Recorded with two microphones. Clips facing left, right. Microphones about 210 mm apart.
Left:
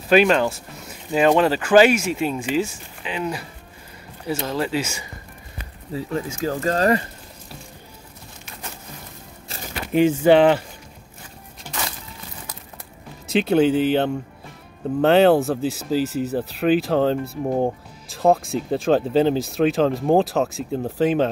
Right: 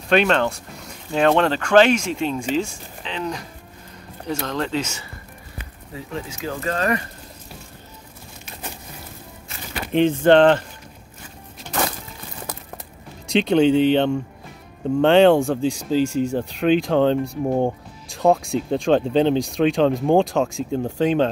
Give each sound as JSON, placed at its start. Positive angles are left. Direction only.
{"t": 0.1, "sound": "speech", "side_deg": 5}
{"t": 4.5, "sound": "speech", "side_deg": 10}
{"t": 6.3, "sound": "speech", "side_deg": 40}
{"t": 9.9, "sound": "speech", "side_deg": 5}
{"t": 13.3, "sound": "speech", "side_deg": 5}